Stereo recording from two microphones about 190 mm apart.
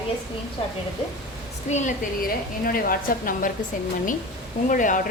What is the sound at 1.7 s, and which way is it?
A woman's voice, 40° left (ahead or behind).